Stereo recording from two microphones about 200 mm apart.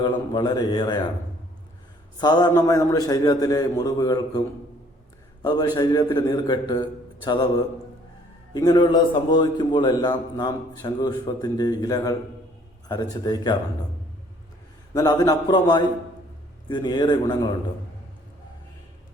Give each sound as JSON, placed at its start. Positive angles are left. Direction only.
{"t": 0.0, "sound": "a man's voice", "side_deg": 20}
{"t": 2.2, "sound": "a man's voice", "side_deg": 20}
{"t": 8.5, "sound": "a man's voice", "side_deg": 20}
{"t": 14.9, "sound": "a man's voice", "side_deg": 20}